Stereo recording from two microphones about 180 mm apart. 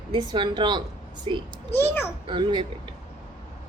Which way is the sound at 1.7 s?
10° left (ahead or behind).